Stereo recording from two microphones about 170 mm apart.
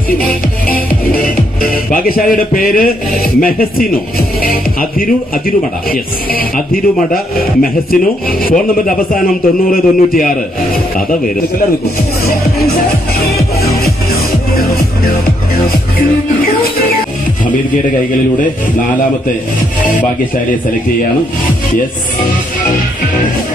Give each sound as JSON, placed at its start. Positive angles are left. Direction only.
{"t": 0.7, "sound": "music", "side_deg": 60}
{"t": 3.3, "sound": "speech", "side_deg": 60}
{"t": 4.4, "sound": "music", "side_deg": 60}
{"t": 5.9, "sound": "a man's voice", "side_deg": 60}